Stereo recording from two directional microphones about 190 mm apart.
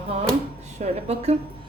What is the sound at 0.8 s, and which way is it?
Speech, 35° right (ahead or behind).